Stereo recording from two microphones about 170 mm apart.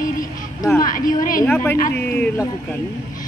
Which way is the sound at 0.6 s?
20° left (ahead or behind).